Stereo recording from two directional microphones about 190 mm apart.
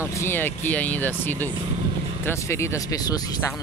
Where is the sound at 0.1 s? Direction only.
10° left (ahead or behind).